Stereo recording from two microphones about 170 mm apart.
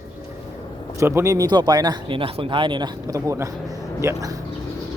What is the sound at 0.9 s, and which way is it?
Speech, 15° right (ahead or behind).